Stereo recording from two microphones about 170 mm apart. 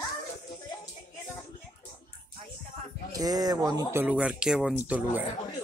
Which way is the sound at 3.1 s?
20° right (ahead or behind).